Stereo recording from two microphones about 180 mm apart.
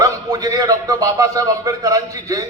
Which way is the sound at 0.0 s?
20° right (ahead or behind).